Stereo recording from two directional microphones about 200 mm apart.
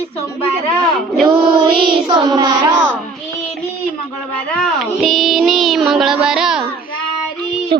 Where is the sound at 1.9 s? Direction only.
20° right (ahead or behind).